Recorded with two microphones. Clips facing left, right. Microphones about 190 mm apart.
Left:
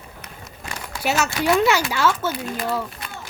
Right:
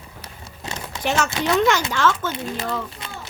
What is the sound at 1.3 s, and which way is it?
Speech, 20° right (ahead or behind).